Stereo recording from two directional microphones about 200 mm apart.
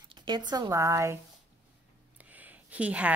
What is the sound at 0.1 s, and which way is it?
A woman's voice, 25° right (ahead or behind).